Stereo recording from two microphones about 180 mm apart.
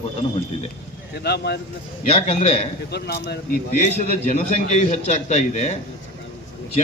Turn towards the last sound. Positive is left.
turn(degrees=40)  # may be behind; listen again after turning